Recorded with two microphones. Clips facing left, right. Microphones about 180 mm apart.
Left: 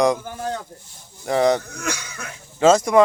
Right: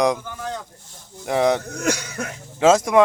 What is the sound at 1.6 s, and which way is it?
Speech, 45° right (ahead or behind).